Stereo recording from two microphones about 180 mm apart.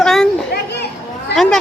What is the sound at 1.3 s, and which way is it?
Speech, centre (ahead or behind).